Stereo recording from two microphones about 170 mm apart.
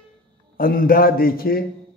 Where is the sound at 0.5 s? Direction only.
55° left (ahead or behind).